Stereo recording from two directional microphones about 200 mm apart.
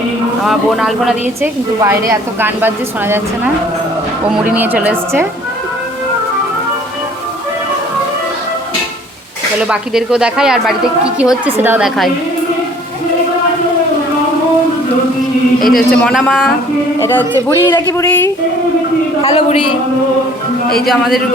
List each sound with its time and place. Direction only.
0.4 s speech: centre (ahead or behind)
1.4 s a woman's voice: 15° right (ahead or behind)
9.6 s a woman's voice: 5° right (ahead or behind)
15.6 s speech: centre (ahead or behind)
17.7 s speech: 20° left (ahead or behind)
19.2 s a sound: 30° left (ahead or behind)
20.8 s speech: centre (ahead or behind)